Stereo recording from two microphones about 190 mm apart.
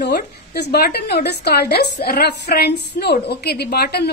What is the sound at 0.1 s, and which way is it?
A woman's voice, 55° left (ahead or behind).